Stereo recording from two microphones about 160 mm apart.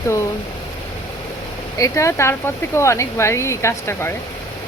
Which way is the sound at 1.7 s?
20° left (ahead or behind).